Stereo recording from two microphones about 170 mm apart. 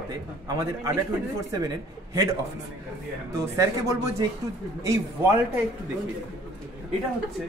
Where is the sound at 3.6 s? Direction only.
20° right (ahead or behind).